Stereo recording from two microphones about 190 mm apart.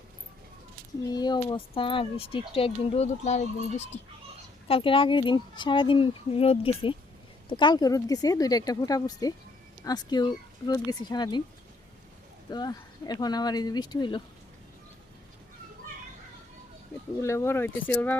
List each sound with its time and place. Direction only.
1.1 s speech: 20° left (ahead or behind)
12.5 s speech: 20° left (ahead or behind)
17.2 s speech: 15° left (ahead or behind)